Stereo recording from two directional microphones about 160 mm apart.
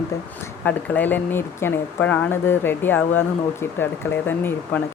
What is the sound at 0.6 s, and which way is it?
Speech, 10° left (ahead or behind).